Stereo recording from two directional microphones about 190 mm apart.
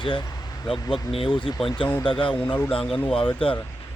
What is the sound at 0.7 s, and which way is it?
Speech, 25° left (ahead or behind).